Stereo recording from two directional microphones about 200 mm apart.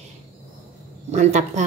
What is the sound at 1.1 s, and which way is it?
Speech, 35° right (ahead or behind).